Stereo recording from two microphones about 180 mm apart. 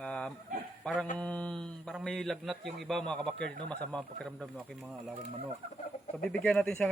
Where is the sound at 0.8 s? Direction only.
Centre (ahead or behind).